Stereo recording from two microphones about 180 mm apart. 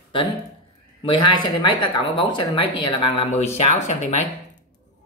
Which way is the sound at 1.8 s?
25° left (ahead or behind).